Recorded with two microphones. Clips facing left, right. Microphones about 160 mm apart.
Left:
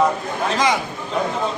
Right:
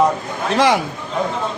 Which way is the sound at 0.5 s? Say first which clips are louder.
Right 5 dB; 65° right (ahead or behind).